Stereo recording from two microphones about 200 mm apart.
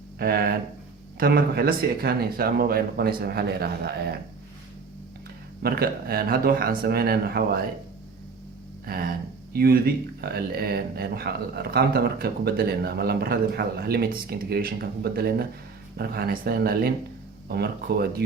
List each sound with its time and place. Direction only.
0.2 s speech: 50° right (ahead or behind)
5.6 s speech: 50° right (ahead or behind)
8.9 s speech: 50° right (ahead or behind)